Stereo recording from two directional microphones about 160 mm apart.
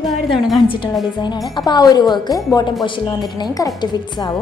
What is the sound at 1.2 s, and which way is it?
Speech, 25° left (ahead or behind).